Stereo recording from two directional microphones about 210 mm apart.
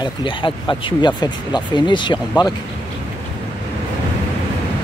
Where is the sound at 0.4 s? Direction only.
20° left (ahead or behind).